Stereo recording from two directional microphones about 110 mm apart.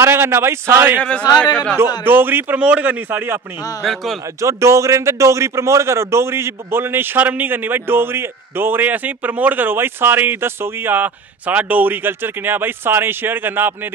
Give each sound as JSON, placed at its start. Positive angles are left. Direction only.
{"t": 0.0, "sound": "a man's voice", "side_deg": -20}
{"t": 2.0, "sound": "a man's voice", "side_deg": -20}
{"t": 3.8, "sound": "a man's voice", "side_deg": 0}
{"t": 4.4, "sound": "a man's voice", "side_deg": -25}